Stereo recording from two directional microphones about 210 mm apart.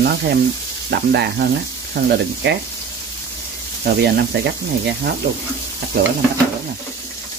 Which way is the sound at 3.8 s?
50° right (ahead or behind).